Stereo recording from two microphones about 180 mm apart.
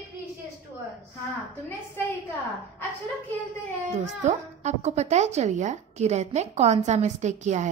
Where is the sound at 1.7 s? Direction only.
10° left (ahead or behind).